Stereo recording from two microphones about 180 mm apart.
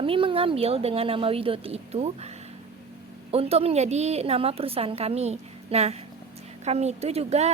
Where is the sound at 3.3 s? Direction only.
35° right (ahead or behind).